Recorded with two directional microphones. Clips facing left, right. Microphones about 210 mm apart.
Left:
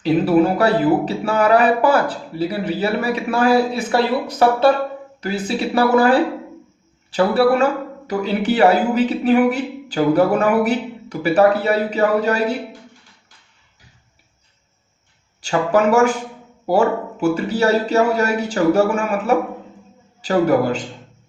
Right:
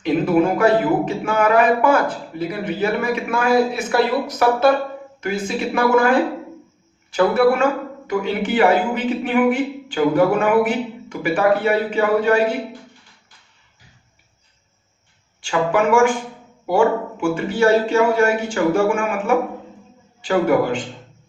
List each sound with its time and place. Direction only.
0.0 s a man's voice: 35° left (ahead or behind)
15.4 s a man's voice: 40° left (ahead or behind)